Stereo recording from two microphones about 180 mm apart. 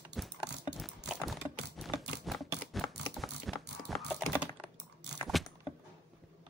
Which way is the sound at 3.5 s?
Centre (ahead or behind).